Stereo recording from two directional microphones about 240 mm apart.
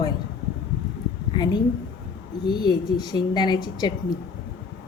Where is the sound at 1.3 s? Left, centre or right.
Centre.